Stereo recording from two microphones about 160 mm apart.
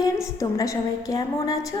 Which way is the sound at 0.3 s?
20° left (ahead or behind).